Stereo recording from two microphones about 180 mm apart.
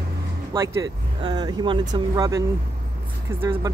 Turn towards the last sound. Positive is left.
turn(degrees=-30)  # may be behind; listen again after turning